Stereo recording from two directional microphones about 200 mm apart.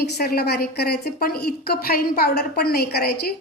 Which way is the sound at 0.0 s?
50° left (ahead or behind).